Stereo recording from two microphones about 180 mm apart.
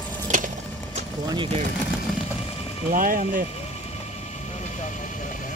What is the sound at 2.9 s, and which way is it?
Speech, 50° right (ahead or behind).